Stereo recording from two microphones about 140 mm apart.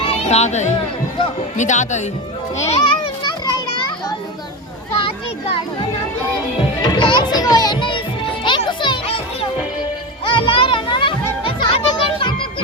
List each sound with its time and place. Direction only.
0.0 s a sound: 50° left (ahead or behind)
1.5 s speech: 60° left (ahead or behind)
2.6 s a child's voice: 45° left (ahead or behind)
4.9 s children playing: 40° left (ahead or behind)
6.8 s children playing: 35° left (ahead or behind)
8.4 s music: 35° left (ahead or behind)